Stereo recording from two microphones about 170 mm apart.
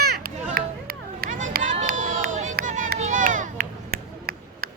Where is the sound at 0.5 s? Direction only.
60° right (ahead or behind).